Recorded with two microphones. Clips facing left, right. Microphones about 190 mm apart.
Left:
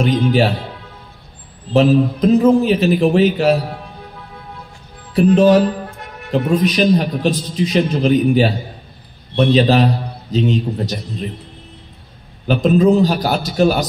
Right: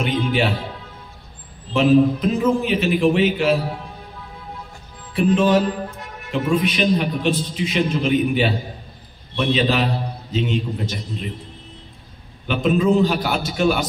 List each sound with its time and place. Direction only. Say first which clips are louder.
0.0 s a man's voice: left 6 dB; 40° left (ahead or behind)
1.7 s a man's voice: left 2 dB; 40° left (ahead or behind)
5.1 s a man's voice: left 6 dB; 40° left (ahead or behind)
12.4 s a man's voice: left 5 dB; 40° left (ahead or behind)